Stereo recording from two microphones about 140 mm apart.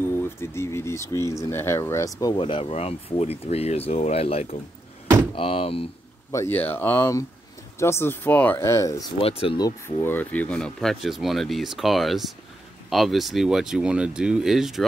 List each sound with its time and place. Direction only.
0.1 s speech: 15° left (ahead or behind); by 5.9 s 40° left (ahead or behind)
6.3 s speech: 15° left (ahead or behind)
9.2 s speech: 45° left (ahead or behind)
9.6 s speech: 25° left (ahead or behind); by 14.9 s centre (ahead or behind)